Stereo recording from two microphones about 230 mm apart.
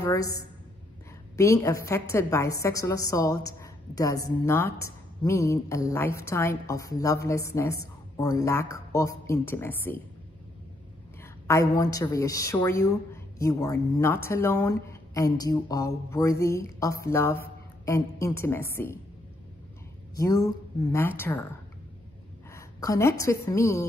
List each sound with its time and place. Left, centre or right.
0.0 s a woman's voice: centre
11.4 s a woman's voice: centre
20.2 s a woman's voice: centre
22.5 s a woman's voice: centre